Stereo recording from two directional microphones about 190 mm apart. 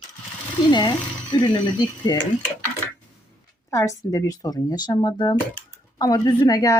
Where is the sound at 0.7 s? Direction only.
25° left (ahead or behind).